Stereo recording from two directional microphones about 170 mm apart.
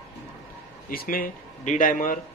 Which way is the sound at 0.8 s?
55° left (ahead or behind).